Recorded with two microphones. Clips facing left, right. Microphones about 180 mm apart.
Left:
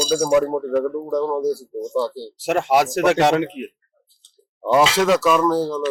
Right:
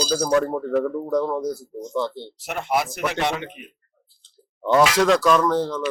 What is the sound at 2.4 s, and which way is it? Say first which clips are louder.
Speech: left 7 dB; 90° left.